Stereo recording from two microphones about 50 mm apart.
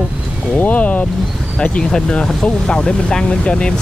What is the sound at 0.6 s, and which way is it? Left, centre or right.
Speech, left.